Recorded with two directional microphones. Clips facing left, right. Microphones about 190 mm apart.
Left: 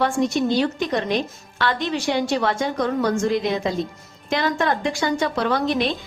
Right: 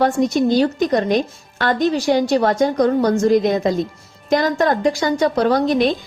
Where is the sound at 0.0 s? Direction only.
40° right (ahead or behind).